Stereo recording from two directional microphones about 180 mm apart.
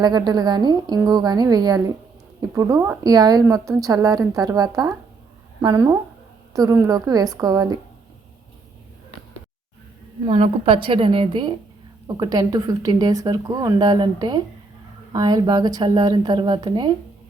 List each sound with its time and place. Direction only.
0.0 s a woman's voice: 25° right (ahead or behind)
10.2 s a woman's voice: 30° right (ahead or behind)